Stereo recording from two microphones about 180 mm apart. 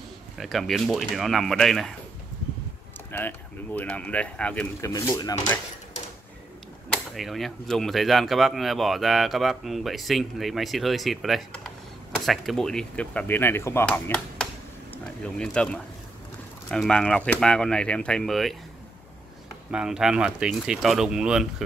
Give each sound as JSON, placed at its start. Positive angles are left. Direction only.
{"t": 0.4, "sound": "speech", "side_deg": 0}
{"t": 3.1, "sound": "speech", "side_deg": 10}
{"t": 4.8, "sound": "speech", "side_deg": 20}
{"t": 6.9, "sound": "speech", "side_deg": 0}
{"t": 19.7, "sound": "speech", "side_deg": -5}